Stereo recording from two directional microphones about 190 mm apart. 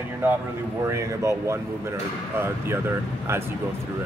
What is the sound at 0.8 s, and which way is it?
Speech, 15° right (ahead or behind).